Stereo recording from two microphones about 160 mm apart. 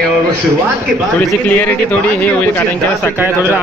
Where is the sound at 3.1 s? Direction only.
10° right (ahead or behind).